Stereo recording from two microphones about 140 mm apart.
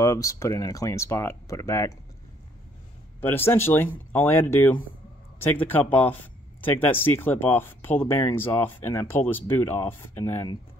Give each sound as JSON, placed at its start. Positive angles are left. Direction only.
{"t": 0.0, "sound": "speech", "side_deg": 25}
{"t": 3.2, "sound": "speech", "side_deg": 15}